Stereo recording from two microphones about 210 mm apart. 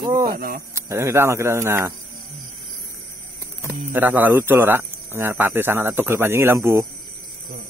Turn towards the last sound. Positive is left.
turn(degrees=-10)  # may be behind; listen again after turning